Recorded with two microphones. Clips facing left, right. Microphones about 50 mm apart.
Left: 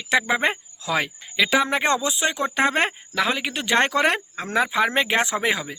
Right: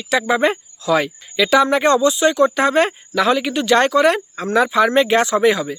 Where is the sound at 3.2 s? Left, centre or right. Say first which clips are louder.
Right 10 dB; centre.